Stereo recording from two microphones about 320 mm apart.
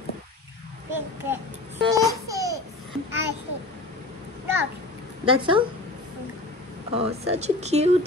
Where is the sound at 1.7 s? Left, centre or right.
Centre.